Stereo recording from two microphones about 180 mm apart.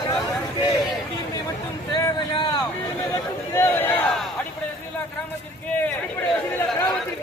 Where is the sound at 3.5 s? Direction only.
10° left (ahead or behind).